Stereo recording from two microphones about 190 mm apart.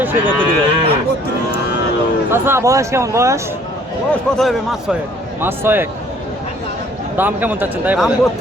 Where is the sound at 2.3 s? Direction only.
10° right (ahead or behind).